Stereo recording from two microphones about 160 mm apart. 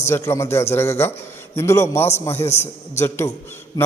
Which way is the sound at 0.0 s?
15° left (ahead or behind).